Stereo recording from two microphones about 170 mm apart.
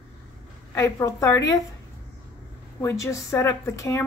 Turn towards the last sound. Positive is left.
turn(degrees=15)  # may be behind; listen again after turning